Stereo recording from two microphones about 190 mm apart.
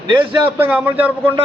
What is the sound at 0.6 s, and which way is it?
Speech, 5° right (ahead or behind).